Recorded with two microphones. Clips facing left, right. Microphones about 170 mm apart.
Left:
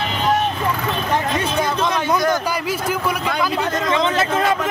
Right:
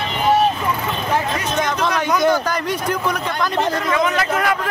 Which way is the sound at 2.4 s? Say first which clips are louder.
Right 1 dB; 5° left (ahead or behind).